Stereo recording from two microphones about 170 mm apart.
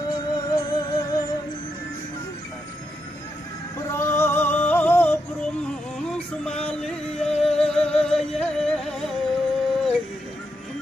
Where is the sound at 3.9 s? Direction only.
15° left (ahead or behind).